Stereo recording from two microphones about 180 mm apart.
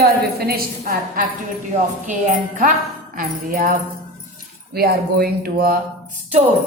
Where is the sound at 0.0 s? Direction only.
60° right (ahead or behind).